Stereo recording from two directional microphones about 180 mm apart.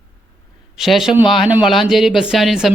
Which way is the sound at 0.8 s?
Centre (ahead or behind).